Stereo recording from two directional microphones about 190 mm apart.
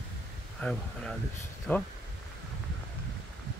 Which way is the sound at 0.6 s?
5° left (ahead or behind).